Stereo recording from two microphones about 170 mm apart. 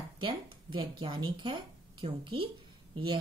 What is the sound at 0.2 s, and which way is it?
A woman's voice, 30° right (ahead or behind).